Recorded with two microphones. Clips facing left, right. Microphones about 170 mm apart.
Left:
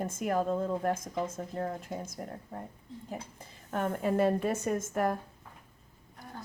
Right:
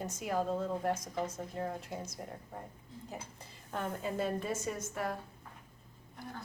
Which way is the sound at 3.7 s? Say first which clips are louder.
Left 7 dB; 55° left (ahead or behind).